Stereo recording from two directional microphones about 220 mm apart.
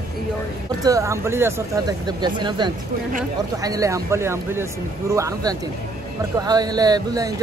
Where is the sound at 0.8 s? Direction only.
15° right (ahead or behind).